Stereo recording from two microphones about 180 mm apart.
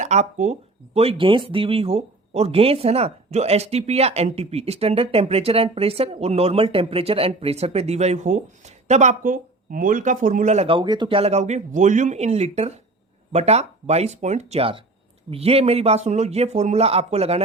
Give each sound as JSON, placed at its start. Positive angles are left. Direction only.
{"t": 0.0, "sound": "speech", "side_deg": -40}